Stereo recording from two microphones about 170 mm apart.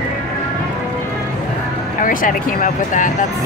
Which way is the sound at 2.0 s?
55° left (ahead or behind).